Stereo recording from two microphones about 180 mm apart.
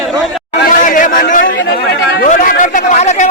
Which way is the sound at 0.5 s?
50° left (ahead or behind).